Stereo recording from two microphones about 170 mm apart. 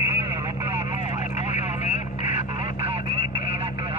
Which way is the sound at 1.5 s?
45° left (ahead or behind).